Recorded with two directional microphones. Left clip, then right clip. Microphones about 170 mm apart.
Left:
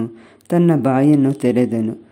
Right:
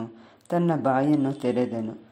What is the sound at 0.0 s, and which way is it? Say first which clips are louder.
Speech: left 10 dB; 25° left (ahead or behind).